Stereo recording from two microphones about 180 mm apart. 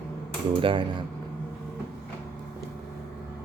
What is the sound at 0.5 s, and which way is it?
Cutlery, 30° right (ahead or behind).